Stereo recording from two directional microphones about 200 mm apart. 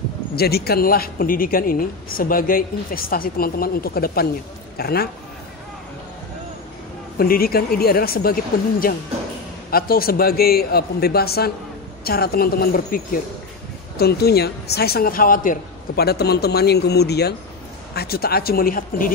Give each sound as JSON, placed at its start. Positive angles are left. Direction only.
{"t": 0.4, "sound": "speech", "side_deg": 50}
{"t": 7.2, "sound": "speech", "side_deg": 50}